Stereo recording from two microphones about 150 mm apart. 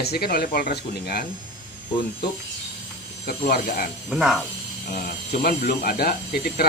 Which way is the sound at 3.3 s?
80° left.